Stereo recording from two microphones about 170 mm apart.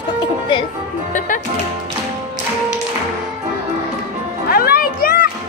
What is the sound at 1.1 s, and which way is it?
Speech, 50° left (ahead or behind).